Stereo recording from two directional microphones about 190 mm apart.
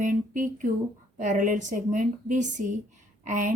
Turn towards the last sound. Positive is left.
turn(degrees=-45)  # may be behind; listen again after turning